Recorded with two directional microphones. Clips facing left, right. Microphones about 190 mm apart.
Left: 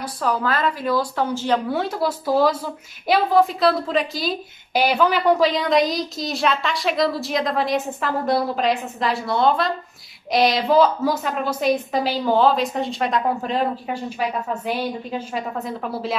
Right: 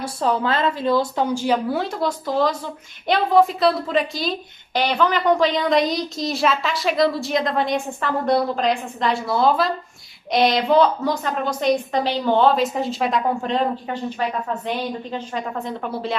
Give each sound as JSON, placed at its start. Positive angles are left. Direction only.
{"t": 0.0, "sound": "speech", "side_deg": -25}
{"t": 1.7, "sound": "a woman's voice", "side_deg": 0}